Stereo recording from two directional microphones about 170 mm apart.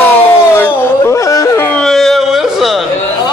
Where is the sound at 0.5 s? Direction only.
15° left (ahead or behind).